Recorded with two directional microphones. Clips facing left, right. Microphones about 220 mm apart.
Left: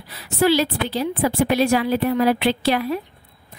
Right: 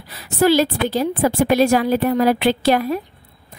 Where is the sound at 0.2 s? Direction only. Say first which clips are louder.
Right 3 dB; 45° right (ahead or behind).